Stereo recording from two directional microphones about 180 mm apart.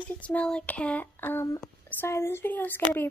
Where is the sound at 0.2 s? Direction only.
5° left (ahead or behind).